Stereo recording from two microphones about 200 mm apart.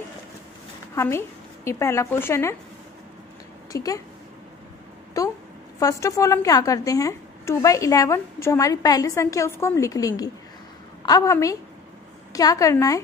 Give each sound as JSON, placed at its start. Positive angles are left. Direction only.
{"t": 0.9, "sound": "speech", "side_deg": 15}
{"t": 3.7, "sound": "a woman's voice", "side_deg": 15}
{"t": 5.2, "sound": "a woman's voice", "side_deg": 15}